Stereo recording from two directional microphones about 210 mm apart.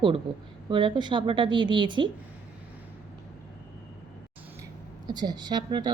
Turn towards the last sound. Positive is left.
turn(degrees=-20)  # may be behind; listen again after turning